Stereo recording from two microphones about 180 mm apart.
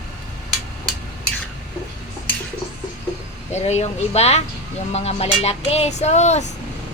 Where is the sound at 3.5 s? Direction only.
40° left (ahead or behind).